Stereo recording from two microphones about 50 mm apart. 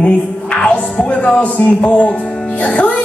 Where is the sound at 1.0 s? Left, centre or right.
Left.